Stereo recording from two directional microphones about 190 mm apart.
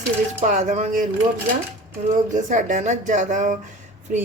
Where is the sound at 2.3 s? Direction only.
40° right (ahead or behind).